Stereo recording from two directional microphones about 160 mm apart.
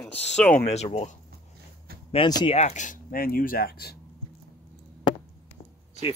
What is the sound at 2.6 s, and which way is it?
Speech, 45° left (ahead or behind).